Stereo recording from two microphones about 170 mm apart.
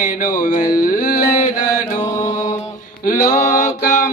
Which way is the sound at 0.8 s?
55° left (ahead or behind).